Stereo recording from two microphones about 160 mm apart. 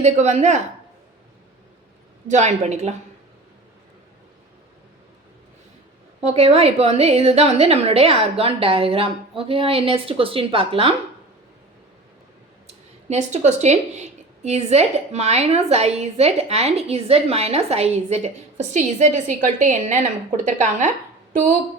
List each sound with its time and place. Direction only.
0.0 s speech: 45° right (ahead or behind)
2.2 s speech: 45° right (ahead or behind)
6.2 s a woman's voice: 40° right (ahead or behind)
12.6 s speech: 45° right (ahead or behind)